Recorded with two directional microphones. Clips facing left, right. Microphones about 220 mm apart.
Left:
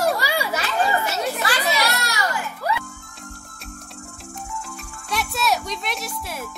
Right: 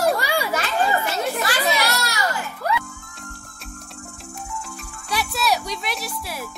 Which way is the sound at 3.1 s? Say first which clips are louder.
Even; centre (ahead or behind).